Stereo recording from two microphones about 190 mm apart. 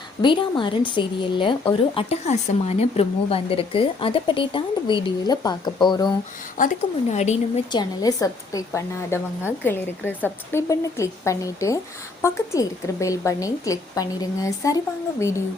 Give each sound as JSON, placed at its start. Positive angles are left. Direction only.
{"t": 0.2, "sound": "speech", "side_deg": 25}
{"t": 6.6, "sound": "speech", "side_deg": 40}
{"t": 7.7, "sound": "a woman's voice", "side_deg": 20}